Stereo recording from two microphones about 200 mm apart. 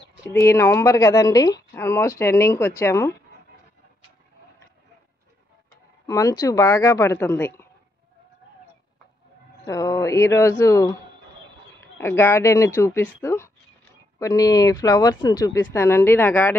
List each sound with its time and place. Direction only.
0.3 s speech: 15° left (ahead or behind)
6.0 s speech: 15° left (ahead or behind)
9.7 s a sound: 15° left (ahead or behind)
10.6 s speech: 15° left (ahead or behind)